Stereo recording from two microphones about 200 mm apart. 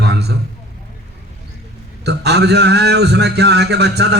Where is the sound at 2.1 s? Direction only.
55° right (ahead or behind).